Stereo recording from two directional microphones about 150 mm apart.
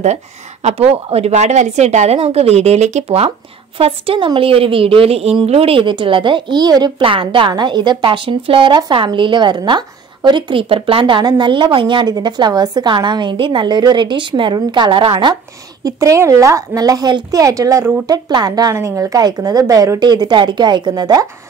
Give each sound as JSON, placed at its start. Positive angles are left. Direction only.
{"t": 0.7, "sound": "speech", "side_deg": -40}
{"t": 15.8, "sound": "a woman's voice", "side_deg": -20}